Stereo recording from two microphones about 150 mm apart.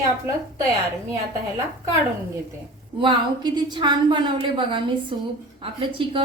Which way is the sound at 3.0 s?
30° right (ahead or behind).